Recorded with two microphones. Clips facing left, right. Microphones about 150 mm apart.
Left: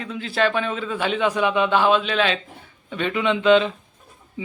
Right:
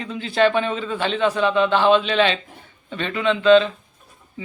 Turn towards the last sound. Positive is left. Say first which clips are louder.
# right 2 dB
turn(degrees=15)  # may be behind; listen again after turning